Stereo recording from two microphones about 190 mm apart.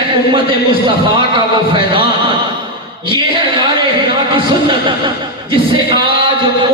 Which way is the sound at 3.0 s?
25° right (ahead or behind).